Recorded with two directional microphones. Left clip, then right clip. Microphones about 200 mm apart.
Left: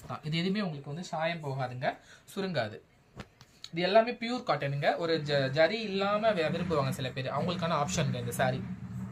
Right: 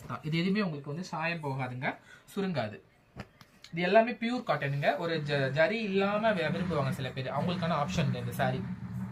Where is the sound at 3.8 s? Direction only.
50° left (ahead or behind).